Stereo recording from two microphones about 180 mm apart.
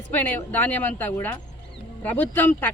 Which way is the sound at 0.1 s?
10° left (ahead or behind).